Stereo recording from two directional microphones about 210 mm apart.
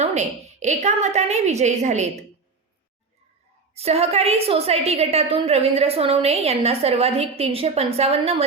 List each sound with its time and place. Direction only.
0.0 s a woman's voice: 35° right (ahead or behind)
3.8 s a woman's voice: 30° right (ahead or behind)